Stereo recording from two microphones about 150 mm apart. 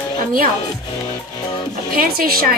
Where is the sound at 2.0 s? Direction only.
80° right.